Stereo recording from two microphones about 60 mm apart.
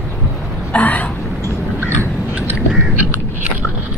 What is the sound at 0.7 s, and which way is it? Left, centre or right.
Vehicle, left.